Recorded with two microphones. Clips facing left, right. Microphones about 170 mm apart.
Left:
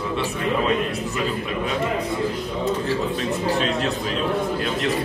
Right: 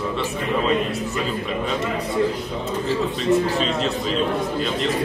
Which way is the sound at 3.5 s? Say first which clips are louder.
Even; centre (ahead or behind).